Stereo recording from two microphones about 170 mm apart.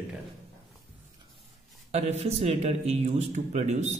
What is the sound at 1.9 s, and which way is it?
A man's voice, 40° right (ahead or behind).